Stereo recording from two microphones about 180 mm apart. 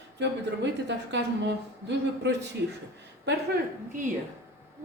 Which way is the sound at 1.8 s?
75° right (ahead or behind).